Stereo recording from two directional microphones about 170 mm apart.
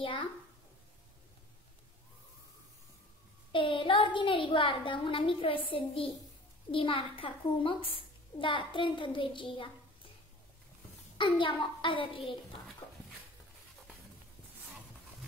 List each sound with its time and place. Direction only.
0.0 s a sound: 30° left (ahead or behind)
3.5 s a woman's voice: 30° left (ahead or behind)
11.1 s a child's voice: 30° left (ahead or behind)